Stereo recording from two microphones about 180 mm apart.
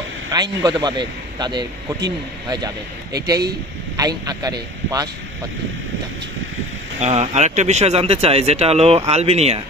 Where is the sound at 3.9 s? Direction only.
20° right (ahead or behind).